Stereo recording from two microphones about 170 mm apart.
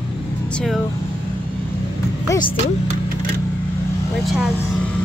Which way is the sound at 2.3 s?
30° left (ahead or behind).